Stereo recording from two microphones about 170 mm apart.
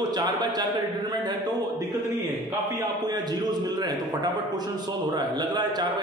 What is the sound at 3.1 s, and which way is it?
A man's voice, 25° right (ahead or behind).